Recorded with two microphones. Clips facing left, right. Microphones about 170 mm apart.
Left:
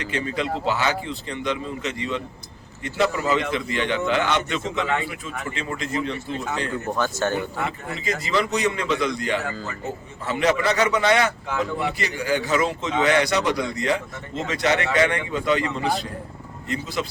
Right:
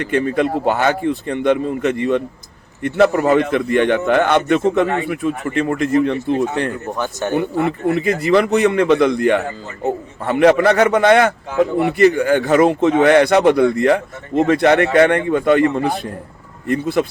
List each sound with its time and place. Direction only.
0.0 s a man's voice: 55° right (ahead or behind)
6.9 s speech: 15° right (ahead or behind)
7.3 s a man's voice: 60° right (ahead or behind)